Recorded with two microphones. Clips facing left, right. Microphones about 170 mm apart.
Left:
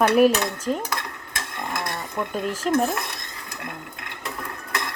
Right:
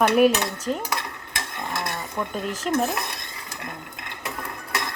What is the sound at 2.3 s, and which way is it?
Speech, 10° left (ahead or behind).